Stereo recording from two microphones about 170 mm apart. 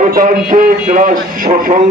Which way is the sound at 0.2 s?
45° right (ahead or behind).